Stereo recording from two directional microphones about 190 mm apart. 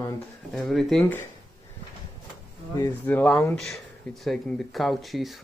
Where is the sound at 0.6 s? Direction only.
Centre (ahead or behind).